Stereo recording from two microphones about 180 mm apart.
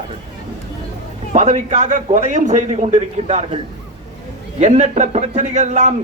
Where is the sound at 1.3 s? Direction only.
40° right (ahead or behind).